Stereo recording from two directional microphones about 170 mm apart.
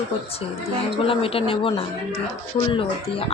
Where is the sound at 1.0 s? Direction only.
35° left (ahead or behind).